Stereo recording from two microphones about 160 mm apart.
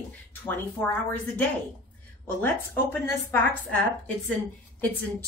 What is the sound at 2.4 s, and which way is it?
A woman's voice, 10° left (ahead or behind).